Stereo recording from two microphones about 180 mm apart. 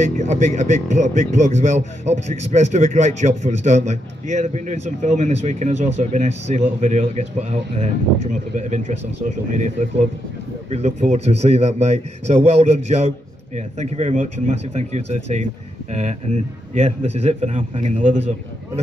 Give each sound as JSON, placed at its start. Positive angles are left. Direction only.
{"t": 0.0, "sound": "speech", "side_deg": -40}